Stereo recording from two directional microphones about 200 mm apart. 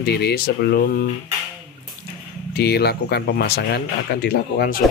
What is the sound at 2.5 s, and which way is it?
Speech, 55° left (ahead or behind).